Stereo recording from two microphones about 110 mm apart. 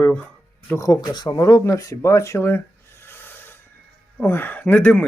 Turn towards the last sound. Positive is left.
turn(degrees=15)  # may be behind; listen again after turning